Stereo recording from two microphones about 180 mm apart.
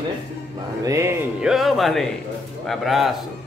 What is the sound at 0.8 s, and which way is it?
Speech, 15° right (ahead or behind).